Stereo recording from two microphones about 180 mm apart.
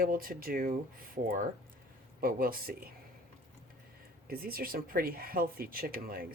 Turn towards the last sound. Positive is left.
turn(degrees=-55)  # may be behind; listen again after turning